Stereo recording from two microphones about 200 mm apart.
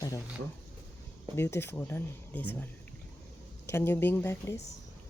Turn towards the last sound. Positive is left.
turn(degrees=15)  # may be behind; listen again after turning